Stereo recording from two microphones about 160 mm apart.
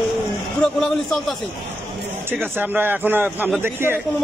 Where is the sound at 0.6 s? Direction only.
Centre (ahead or behind).